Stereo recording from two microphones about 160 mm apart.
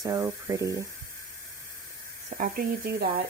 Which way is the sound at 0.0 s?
20° right (ahead or behind).